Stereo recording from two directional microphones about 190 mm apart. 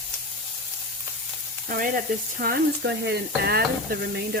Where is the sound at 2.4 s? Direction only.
60° right (ahead or behind).